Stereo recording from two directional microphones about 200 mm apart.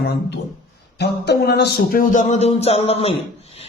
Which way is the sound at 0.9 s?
55° left (ahead or behind).